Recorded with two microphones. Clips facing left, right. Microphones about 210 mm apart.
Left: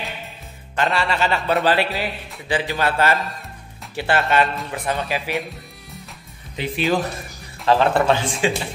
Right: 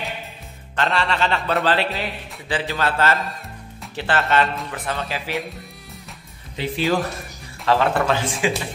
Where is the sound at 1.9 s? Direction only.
Centre (ahead or behind).